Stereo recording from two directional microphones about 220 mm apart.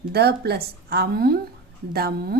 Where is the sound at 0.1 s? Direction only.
45° right (ahead or behind).